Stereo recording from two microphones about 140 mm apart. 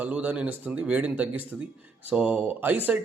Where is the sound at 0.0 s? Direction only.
10° right (ahead or behind).